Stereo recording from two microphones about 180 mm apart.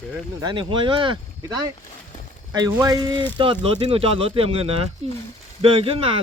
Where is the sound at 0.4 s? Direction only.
25° right (ahead or behind).